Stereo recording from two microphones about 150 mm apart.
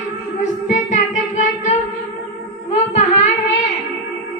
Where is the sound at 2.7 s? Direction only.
50° left (ahead or behind).